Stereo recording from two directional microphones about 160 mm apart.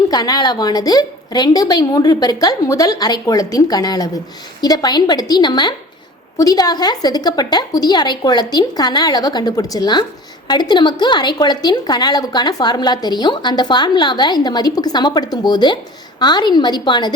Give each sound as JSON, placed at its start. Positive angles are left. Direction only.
{"t": 0.1, "sound": "a woman's voice", "side_deg": 25}